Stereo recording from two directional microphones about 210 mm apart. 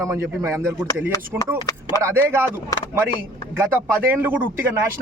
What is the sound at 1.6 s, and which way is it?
Speech, 20° left (ahead or behind).